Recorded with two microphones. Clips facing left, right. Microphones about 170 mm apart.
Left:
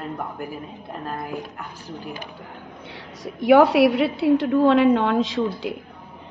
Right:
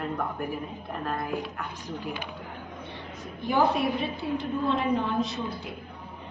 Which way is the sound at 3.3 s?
80° left.